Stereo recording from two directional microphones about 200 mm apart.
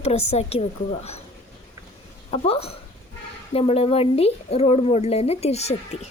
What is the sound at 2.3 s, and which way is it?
A woman's voice, 30° left (ahead or behind).